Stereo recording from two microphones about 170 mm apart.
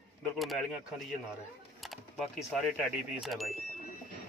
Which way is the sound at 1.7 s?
Centre (ahead or behind).